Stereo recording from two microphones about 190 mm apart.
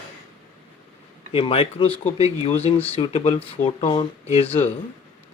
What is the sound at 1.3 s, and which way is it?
Speech, 30° left (ahead or behind).